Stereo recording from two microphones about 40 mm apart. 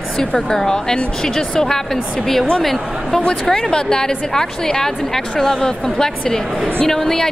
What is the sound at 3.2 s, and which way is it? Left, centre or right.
A woman's voice, left.